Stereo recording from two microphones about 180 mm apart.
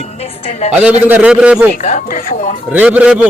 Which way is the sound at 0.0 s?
35° left (ahead or behind).